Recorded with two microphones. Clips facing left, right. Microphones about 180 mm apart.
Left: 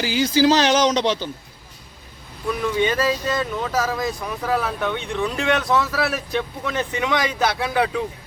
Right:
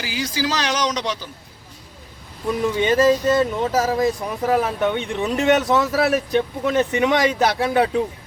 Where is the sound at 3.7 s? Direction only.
35° right (ahead or behind); by 6.1 s 20° right (ahead or behind).